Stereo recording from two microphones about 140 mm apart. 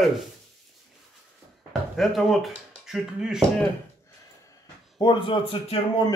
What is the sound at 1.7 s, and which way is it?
Speech, centre (ahead or behind).